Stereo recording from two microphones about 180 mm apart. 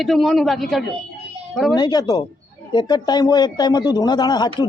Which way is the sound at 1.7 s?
25° left (ahead or behind).